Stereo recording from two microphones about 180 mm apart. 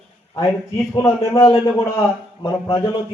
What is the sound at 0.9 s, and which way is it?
A man's voice, 20° left (ahead or behind).